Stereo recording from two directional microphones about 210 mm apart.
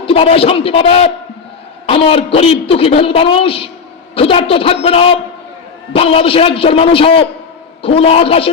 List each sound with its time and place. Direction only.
0.0 s a woman's voice: 25° left (ahead or behind)